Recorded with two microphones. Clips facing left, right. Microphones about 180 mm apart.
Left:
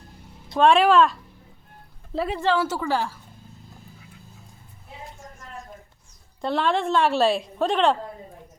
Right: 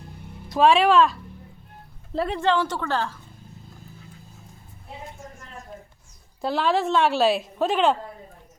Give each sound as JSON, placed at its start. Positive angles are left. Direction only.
{"t": 0.4, "sound": "a woman's voice", "side_deg": 0}
{"t": 6.4, "sound": "a woman's voice", "side_deg": -5}